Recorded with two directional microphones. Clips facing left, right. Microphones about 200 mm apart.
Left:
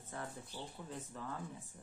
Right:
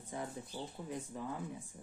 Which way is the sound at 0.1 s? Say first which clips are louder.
Right 4 dB; 15° right (ahead or behind).